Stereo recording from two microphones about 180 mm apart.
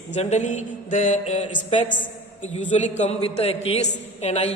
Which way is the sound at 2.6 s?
40° left (ahead or behind).